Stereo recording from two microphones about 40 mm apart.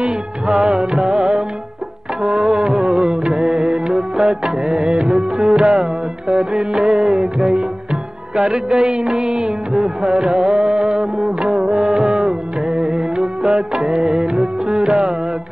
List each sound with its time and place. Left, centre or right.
0.0 s music: centre
2.4 s music: centre